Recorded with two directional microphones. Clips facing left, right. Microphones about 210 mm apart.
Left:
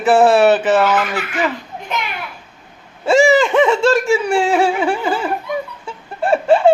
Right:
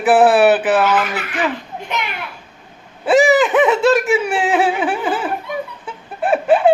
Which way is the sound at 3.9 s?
5° right (ahead or behind).